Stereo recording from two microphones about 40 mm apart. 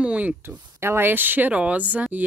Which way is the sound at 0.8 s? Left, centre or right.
Right.